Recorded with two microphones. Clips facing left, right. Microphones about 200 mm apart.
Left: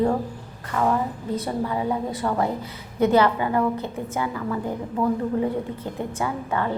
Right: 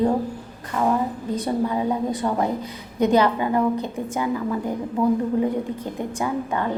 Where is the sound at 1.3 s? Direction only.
15° right (ahead or behind).